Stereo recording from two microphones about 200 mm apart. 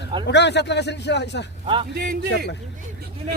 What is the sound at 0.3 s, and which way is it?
A man's voice, 60° left (ahead or behind).